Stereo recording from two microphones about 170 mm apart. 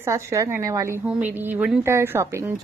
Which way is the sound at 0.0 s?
20° right (ahead or behind).